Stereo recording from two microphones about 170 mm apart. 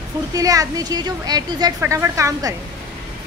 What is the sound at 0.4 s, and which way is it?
A woman's voice, 20° right (ahead or behind).